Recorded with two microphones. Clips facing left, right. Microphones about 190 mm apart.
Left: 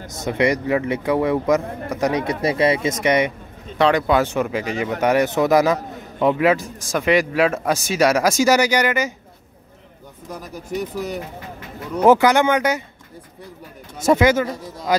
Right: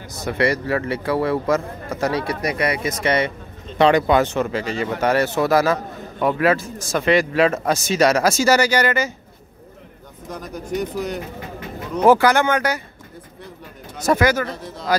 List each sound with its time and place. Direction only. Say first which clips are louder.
0.1 s speech: left 1 dB; 20° left (ahead or behind)
3.7 s speech: right 2 dB; centre (ahead or behind)
10.3 s speech: right 2 dB; 5° left (ahead or behind)
12.1 s speech: left 1 dB; 20° left (ahead or behind)
14.0 s speech: left 2 dB; 25° left (ahead or behind)
14.4 s speech: left 2 dB; 10° left (ahead or behind)